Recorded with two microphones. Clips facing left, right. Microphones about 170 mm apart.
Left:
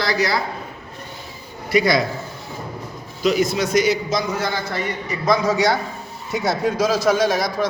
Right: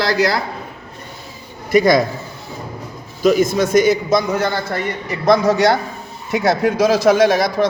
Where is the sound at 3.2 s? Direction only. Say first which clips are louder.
Right 5 dB; 50° right (ahead or behind).